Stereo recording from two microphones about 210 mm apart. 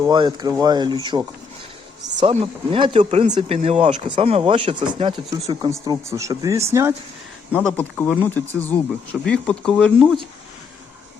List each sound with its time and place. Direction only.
0.0 s speech: 20° right (ahead or behind)
2.2 s speech: 25° right (ahead or behind)
7.5 s speech: 5° left (ahead or behind)